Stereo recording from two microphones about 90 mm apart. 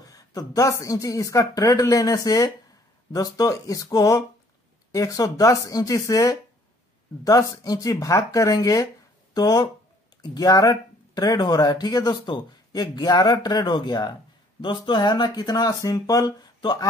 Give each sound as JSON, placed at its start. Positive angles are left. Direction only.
{"t": 0.0, "sound": "a woman's voice", "side_deg": 45}